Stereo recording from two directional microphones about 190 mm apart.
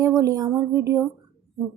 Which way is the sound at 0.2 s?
15° right (ahead or behind).